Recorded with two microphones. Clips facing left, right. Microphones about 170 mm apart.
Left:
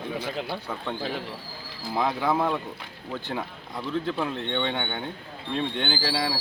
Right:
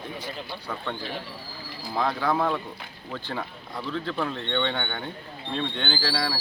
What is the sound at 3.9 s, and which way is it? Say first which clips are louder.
Speech: left 2 dB; 15° left (ahead or behind).